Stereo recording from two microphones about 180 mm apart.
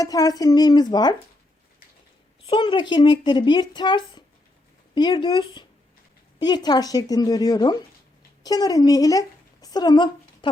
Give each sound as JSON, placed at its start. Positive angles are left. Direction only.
{"t": 0.0, "sound": "speech", "side_deg": 20}
{"t": 2.5, "sound": "speech", "side_deg": 25}